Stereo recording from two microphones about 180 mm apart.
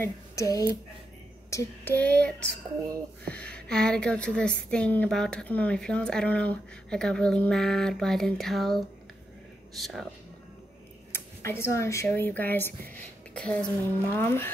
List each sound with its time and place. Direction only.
0.0 s a woman's voice: 20° left (ahead or behind); by 10.0 s centre (ahead or behind)
11.1 s a woman's voice: 15° left (ahead or behind)